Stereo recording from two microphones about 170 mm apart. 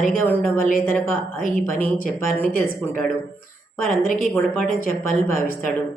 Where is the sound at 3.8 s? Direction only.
50° left (ahead or behind).